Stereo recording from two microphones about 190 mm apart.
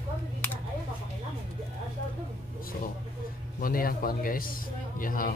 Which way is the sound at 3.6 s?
50° left (ahead or behind).